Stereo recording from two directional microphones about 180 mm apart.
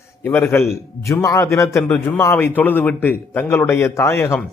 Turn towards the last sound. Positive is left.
turn(degrees=15)  # may be behind; listen again after turning